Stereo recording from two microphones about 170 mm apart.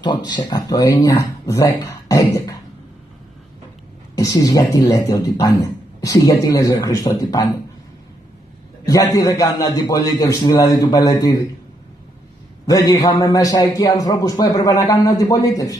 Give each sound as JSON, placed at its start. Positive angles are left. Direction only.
{"t": 0.0, "sound": "speech", "side_deg": 25}
{"t": 4.1, "sound": "speech", "side_deg": 20}
{"t": 8.8, "sound": "speech", "side_deg": 20}
{"t": 12.6, "sound": "speech", "side_deg": 20}